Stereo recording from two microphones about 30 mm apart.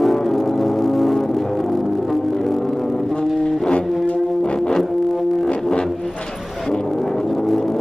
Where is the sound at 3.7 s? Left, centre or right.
Left.